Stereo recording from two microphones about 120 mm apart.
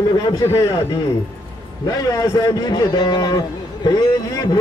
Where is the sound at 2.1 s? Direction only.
30° left (ahead or behind).